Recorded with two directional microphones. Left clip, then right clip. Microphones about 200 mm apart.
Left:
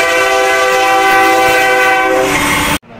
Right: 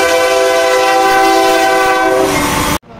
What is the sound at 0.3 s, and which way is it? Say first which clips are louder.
Train: even; 25° right (ahead or behind).